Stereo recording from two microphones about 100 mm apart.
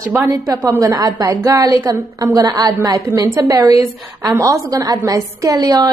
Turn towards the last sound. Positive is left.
turn(degrees=-40)  # may be behind; listen again after turning